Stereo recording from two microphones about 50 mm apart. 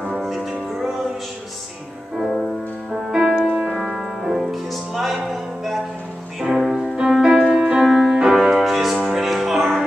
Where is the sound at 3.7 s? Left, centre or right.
Centre.